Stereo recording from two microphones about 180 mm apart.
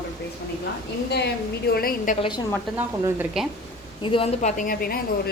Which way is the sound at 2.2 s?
25° left (ahead or behind).